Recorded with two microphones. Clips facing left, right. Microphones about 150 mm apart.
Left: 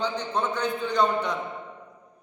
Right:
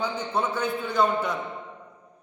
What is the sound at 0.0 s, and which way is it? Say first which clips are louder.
A man's voice: even; 5° right (ahead or behind).